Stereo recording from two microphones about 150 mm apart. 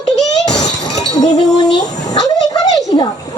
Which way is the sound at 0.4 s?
25° left (ahead or behind).